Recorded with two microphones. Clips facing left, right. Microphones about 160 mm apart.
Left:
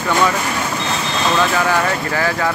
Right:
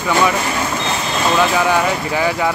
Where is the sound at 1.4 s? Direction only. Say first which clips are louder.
Right 2 dB; 15° right (ahead or behind).